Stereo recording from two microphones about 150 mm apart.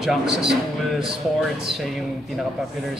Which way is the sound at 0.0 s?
5° right (ahead or behind).